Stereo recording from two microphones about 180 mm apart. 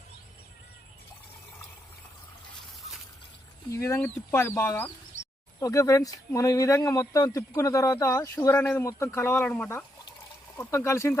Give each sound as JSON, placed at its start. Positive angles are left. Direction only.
{"t": 3.7, "sound": "speech", "side_deg": 15}